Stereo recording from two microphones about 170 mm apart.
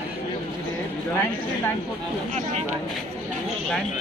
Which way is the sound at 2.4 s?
40° right (ahead or behind).